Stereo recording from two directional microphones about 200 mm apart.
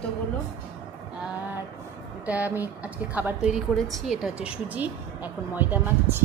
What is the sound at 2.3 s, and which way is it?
A woman's voice, 10° right (ahead or behind).